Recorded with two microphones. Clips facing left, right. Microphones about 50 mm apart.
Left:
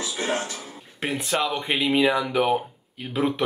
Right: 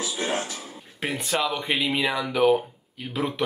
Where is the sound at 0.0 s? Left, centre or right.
Centre.